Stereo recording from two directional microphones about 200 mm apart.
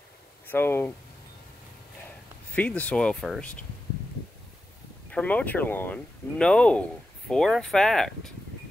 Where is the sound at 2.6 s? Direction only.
5° left (ahead or behind).